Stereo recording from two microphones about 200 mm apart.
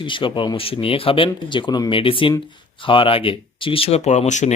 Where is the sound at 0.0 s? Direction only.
25° left (ahead or behind).